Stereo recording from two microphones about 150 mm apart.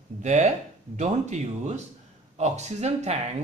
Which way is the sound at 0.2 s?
50° right (ahead or behind).